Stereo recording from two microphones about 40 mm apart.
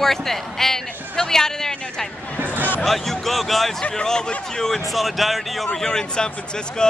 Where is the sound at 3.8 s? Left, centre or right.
Left.